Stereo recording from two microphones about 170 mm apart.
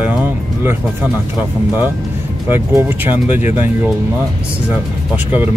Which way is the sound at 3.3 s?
45° left (ahead or behind).